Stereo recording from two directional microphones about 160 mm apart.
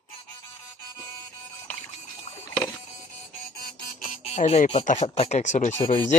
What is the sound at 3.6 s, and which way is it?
Music, 75° left (ahead or behind).